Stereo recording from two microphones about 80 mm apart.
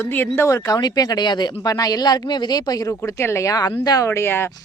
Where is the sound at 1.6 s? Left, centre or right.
Left.